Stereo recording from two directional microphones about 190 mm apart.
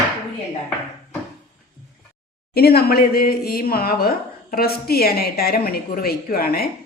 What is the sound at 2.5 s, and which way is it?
Speech, 55° left (ahead or behind).